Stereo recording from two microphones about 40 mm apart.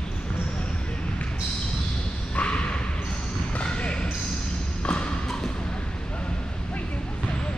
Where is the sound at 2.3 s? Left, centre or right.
Left.